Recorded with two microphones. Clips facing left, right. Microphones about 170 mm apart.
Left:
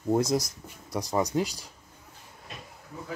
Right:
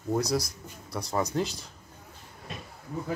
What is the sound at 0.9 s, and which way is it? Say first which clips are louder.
Speech: left 2 dB; 15° left (ahead or behind).